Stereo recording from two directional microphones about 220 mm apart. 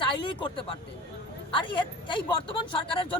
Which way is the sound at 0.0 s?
20° left (ahead or behind).